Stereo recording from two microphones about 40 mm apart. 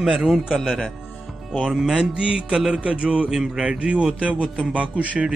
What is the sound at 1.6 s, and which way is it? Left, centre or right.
Speech, centre.